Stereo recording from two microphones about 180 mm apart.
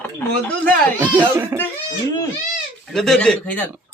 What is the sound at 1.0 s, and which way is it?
Speech, 10° right (ahead or behind).